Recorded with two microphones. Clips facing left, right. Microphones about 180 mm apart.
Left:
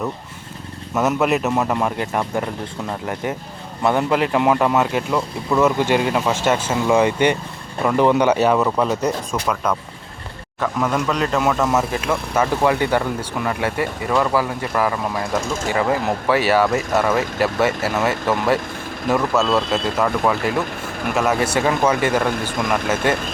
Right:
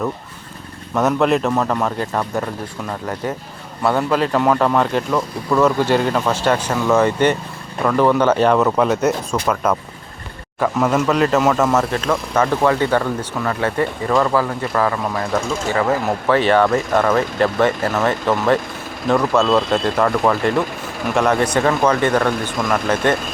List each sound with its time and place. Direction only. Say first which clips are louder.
0.9 s speech: right 2 dB; 5° left (ahead or behind)
1.5 s speech: right 1 dB; 20° left (ahead or behind)